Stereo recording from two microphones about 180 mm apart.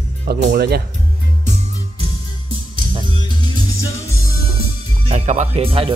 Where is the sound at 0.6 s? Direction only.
60° right (ahead or behind).